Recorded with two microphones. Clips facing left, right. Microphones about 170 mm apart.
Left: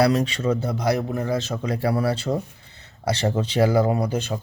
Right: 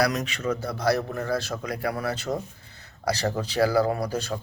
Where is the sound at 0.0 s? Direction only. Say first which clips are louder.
Left 5 dB; 30° left (ahead or behind).